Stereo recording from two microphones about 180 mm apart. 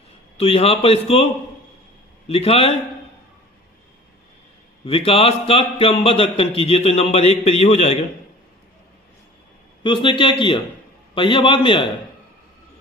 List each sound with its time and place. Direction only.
0.4 s a man's voice: 35° left (ahead or behind)
4.8 s a man's voice: 30° left (ahead or behind)
9.8 s a man's voice: 25° left (ahead or behind)